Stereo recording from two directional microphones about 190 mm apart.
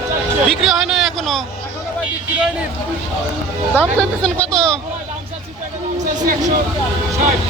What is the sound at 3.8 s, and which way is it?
Speech, 5° left (ahead or behind).